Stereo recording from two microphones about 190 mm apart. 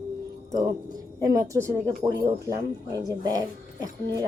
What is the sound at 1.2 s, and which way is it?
A woman's voice, 15° right (ahead or behind).